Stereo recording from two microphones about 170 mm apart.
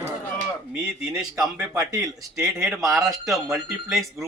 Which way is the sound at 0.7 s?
5° right (ahead or behind).